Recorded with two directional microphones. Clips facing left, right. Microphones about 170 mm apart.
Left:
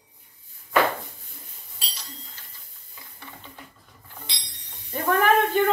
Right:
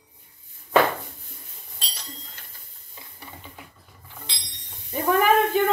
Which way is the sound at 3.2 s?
10° right (ahead or behind).